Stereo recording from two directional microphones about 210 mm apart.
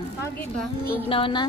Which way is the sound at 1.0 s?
25° left (ahead or behind).